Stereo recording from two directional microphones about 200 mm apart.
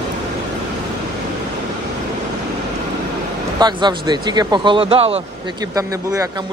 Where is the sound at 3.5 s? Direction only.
20° right (ahead or behind).